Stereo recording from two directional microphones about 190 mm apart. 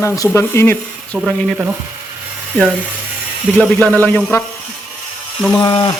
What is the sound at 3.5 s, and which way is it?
Speech, 5° left (ahead or behind).